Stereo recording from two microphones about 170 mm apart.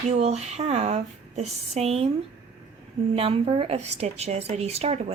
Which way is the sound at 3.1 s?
35° right (ahead or behind).